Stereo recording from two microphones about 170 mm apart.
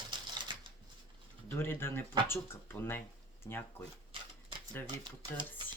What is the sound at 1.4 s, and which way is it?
Speech, 10° left (ahead or behind).